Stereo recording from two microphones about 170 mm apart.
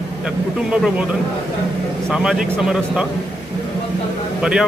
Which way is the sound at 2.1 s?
5° right (ahead or behind).